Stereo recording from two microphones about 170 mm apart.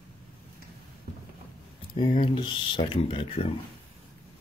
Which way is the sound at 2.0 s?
30° left (ahead or behind).